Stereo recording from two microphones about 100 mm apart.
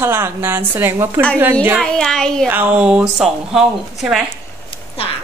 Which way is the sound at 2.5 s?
15° right (ahead or behind).